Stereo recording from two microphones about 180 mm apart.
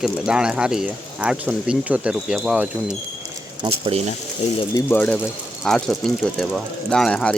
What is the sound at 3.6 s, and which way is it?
Speech, 30° right (ahead or behind).